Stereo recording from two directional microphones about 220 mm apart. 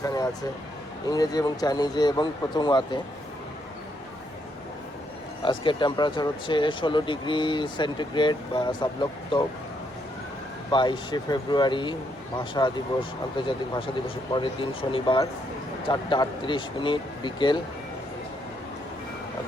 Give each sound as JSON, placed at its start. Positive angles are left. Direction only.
{"t": 0.0, "sound": "speech", "side_deg": 15}
{"t": 5.4, "sound": "speech", "side_deg": 20}
{"t": 10.7, "sound": "speech", "side_deg": 20}